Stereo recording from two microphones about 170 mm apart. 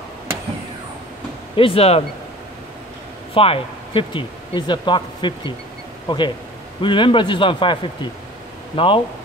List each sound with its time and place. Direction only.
1.6 s speech: 35° left (ahead or behind)
3.3 s speech: 35° left (ahead or behind)